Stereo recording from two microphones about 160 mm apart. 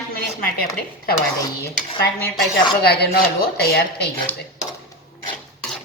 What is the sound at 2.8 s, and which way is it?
A woman's voice, 85° left.